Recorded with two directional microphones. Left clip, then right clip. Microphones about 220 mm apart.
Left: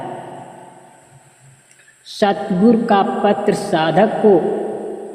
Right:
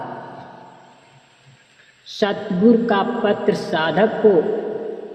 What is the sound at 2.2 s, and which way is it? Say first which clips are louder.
A woman's voice: left 3 dB; 40° left (ahead or behind).